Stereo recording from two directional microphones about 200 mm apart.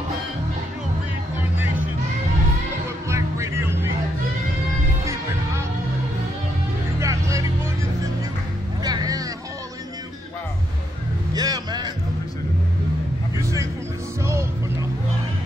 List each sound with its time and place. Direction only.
3.1 s music: 15° right (ahead or behind)
7.0 s music: 15° right (ahead or behind)
8.8 s music: 20° right (ahead or behind)
11.3 s music: 20° right (ahead or behind)